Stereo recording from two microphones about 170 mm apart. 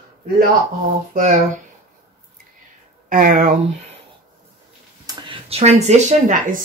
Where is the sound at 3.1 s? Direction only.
55° right (ahead or behind).